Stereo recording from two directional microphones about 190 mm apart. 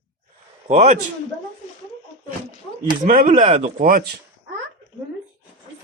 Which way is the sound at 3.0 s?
40° right (ahead or behind).